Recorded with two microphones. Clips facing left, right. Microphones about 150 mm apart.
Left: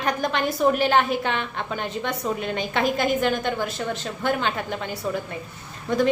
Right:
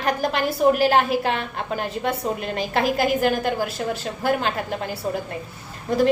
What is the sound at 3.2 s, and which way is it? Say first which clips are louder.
Speech: right 2 dB; 35° right (ahead or behind).